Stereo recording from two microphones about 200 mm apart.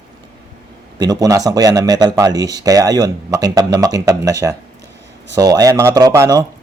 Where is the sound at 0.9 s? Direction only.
20° right (ahead or behind).